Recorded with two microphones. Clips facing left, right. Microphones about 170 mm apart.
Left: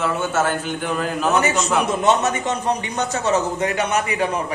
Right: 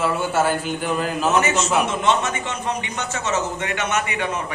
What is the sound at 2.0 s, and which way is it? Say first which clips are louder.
A man's voice: left 3 dB; 40° left (ahead or behind).